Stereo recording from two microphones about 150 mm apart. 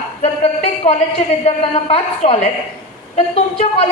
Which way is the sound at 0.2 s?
45° left (ahead or behind).